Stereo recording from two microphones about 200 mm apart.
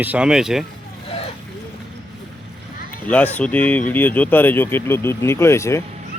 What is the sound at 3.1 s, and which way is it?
Speech, 10° left (ahead or behind).